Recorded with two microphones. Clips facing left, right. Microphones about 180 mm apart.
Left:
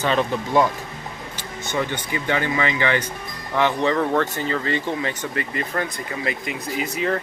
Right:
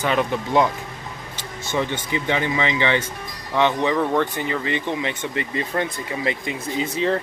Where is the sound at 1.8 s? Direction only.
25° right (ahead or behind).